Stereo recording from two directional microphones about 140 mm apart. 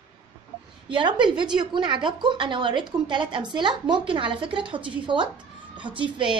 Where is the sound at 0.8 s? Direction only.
35° right (ahead or behind).